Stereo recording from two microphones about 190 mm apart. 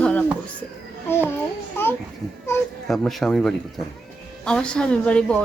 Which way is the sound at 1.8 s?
10° left (ahead or behind).